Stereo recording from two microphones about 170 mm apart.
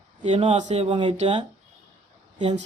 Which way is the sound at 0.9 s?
30° right (ahead or behind).